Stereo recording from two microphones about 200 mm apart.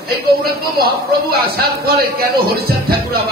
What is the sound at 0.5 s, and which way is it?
Speech, 50° right (ahead or behind).